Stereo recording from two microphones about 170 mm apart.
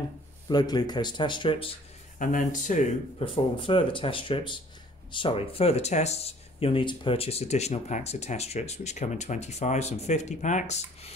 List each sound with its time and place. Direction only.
0.5 s a man's voice: 25° left (ahead or behind)
2.1 s speech: 50° left (ahead or behind)
3.5 s speech: 30° left (ahead or behind)